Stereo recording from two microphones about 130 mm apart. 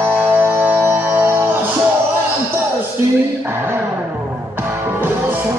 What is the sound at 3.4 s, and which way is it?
Music, 15° right (ahead or behind).